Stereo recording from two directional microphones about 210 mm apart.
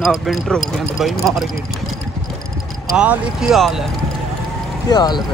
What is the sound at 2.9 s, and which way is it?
Speech, 5° right (ahead or behind).